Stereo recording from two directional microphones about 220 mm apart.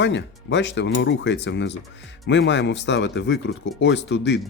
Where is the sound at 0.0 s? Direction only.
55° left (ahead or behind).